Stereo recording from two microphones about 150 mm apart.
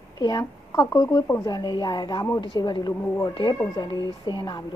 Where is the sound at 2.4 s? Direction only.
30° left (ahead or behind).